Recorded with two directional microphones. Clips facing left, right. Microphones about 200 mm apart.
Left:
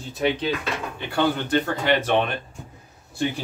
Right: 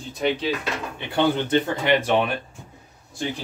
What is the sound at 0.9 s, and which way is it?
Speech, 20° right (ahead or behind).